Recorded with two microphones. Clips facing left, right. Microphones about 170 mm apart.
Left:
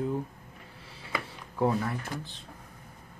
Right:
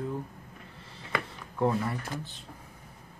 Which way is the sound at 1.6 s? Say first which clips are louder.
Even; centre (ahead or behind).